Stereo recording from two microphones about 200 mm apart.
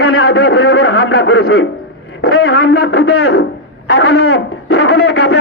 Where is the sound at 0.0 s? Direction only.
90° left.